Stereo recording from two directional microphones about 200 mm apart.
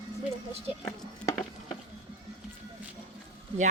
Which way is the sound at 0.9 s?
15° left (ahead or behind).